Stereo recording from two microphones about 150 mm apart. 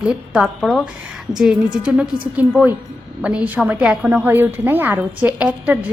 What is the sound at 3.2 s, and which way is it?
A woman's voice, 10° right (ahead or behind).